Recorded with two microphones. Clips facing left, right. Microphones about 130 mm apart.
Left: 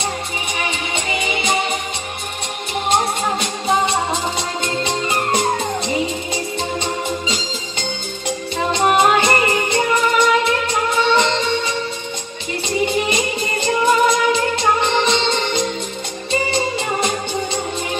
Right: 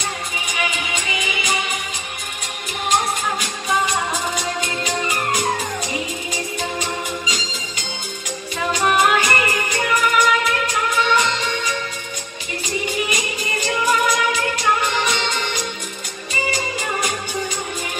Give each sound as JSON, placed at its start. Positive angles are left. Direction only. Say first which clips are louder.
{"t": 0.6, "sound": "music", "louder": "even", "side_deg": 35}
{"t": 3.6, "sound": "music", "louder": "left 3 dB", "side_deg": 30}
{"t": 8.7, "sound": "music", "louder": "left 3 dB", "side_deg": 25}
{"t": 13.1, "sound": "music", "louder": "left 4 dB", "side_deg": 25}